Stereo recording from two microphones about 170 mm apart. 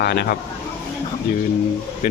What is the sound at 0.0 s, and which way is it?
Speech, 70° left (ahead or behind).